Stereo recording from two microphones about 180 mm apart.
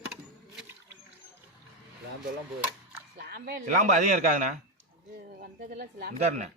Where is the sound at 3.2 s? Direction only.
65° right (ahead or behind).